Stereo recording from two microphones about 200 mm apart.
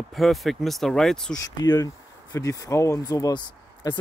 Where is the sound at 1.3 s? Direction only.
20° left (ahead or behind).